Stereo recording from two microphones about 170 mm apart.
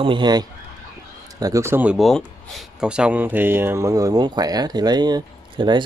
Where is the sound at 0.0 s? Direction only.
25° right (ahead or behind).